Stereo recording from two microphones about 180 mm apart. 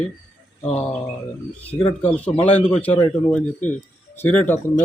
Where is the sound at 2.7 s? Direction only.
10° left (ahead or behind).